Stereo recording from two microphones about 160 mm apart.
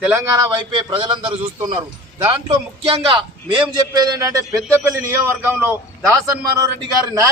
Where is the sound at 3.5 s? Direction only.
25° right (ahead or behind).